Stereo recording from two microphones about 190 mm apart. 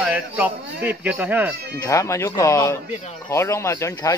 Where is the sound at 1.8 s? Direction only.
15° left (ahead or behind).